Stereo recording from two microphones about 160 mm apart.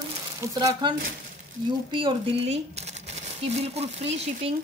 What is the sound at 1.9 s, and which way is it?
Speech, 35° right (ahead or behind).